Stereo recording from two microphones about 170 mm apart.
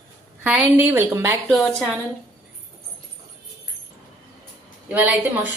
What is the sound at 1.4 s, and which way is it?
Speech, centre (ahead or behind).